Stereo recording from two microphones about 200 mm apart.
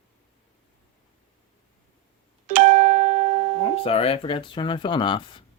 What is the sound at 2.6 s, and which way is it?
Music, 40° right (ahead or behind).